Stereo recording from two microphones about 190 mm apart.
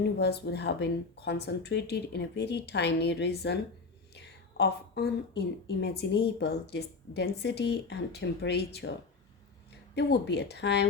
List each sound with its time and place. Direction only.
0.2 s a woman's voice: 60° left (ahead or behind)
9.9 s a woman's voice: 65° left (ahead or behind)